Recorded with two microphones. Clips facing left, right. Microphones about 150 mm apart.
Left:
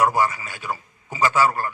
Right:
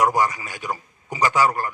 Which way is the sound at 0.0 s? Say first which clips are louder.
Even; 15° right (ahead or behind).